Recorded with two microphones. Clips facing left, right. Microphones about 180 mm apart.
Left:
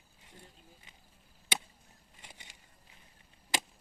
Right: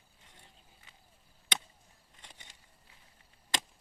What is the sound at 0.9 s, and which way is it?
Chop, 20° left (ahead or behind).